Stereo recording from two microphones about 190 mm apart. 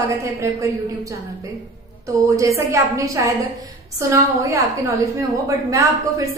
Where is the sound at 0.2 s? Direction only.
15° right (ahead or behind).